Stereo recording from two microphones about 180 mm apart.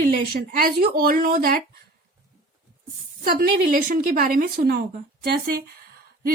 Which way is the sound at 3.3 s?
50° right (ahead or behind).